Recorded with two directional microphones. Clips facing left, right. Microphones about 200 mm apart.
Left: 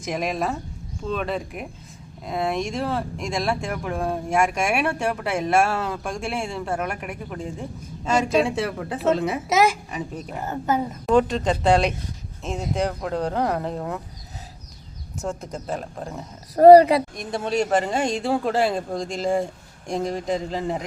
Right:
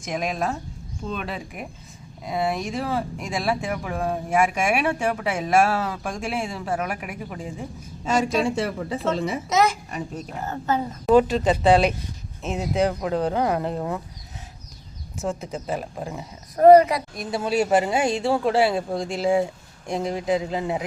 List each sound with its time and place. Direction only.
0.0 s speech: centre (ahead or behind)
15.2 s speech: centre (ahead or behind)
16.6 s speech: 35° left (ahead or behind)
17.2 s speech: 5° right (ahead or behind)